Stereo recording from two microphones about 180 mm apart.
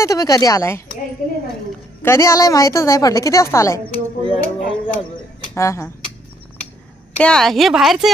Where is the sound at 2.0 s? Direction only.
15° left (ahead or behind).